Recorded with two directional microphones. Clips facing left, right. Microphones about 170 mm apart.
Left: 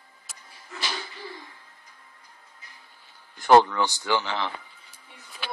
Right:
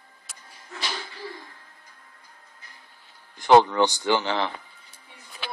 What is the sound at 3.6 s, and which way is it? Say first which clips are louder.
Speech: right 4 dB; 25° right (ahead or behind).